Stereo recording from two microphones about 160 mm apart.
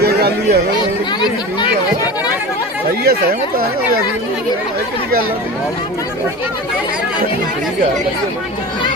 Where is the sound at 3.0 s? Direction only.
80° right.